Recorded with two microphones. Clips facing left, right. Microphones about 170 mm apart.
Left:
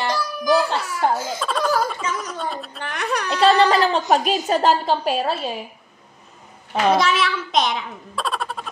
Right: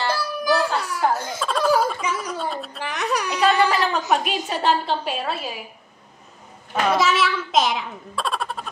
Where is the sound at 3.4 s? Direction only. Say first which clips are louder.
Left 4 dB; 30° left (ahead or behind).